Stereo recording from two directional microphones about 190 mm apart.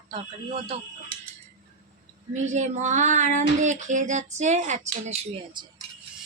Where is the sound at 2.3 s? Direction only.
40° right (ahead or behind).